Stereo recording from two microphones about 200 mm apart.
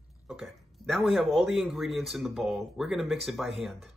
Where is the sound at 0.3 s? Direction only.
Centre (ahead or behind).